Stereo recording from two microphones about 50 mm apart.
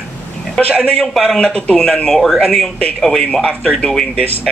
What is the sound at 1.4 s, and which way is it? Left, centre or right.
Speech, centre.